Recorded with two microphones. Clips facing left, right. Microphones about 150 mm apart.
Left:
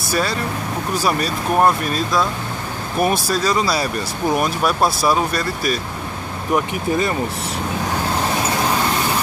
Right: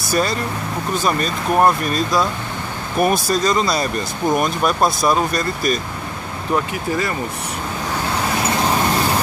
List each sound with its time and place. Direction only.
0.1 s speech: centre (ahead or behind)
6.5 s speech: 20° left (ahead or behind)